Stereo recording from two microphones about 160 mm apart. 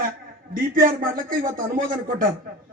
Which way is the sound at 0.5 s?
60° right (ahead or behind).